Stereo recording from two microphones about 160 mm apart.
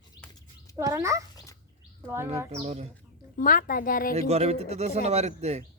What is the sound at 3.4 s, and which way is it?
Speech, 60° left (ahead or behind).